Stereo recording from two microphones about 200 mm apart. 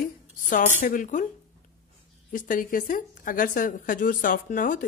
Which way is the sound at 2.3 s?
40° left (ahead or behind).